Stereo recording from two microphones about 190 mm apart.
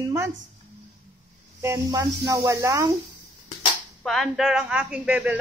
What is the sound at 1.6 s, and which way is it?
Speech, 15° right (ahead or behind).